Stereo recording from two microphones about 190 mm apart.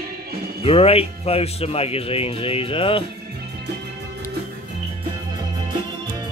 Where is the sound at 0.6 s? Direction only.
30° left (ahead or behind).